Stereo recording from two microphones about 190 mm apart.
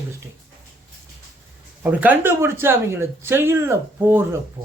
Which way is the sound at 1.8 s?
10° right (ahead or behind).